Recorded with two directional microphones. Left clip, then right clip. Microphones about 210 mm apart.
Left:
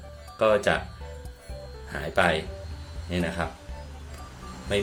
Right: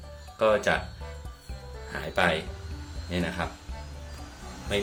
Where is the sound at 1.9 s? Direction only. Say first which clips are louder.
Left 2 dB; 15° left (ahead or behind).